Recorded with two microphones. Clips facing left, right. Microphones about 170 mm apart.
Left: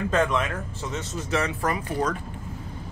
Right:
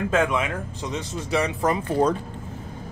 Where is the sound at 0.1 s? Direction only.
10° right (ahead or behind); by 2.1 s 30° right (ahead or behind).